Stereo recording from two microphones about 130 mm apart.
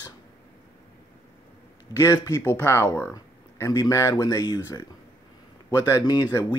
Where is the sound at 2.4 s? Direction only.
15° left (ahead or behind).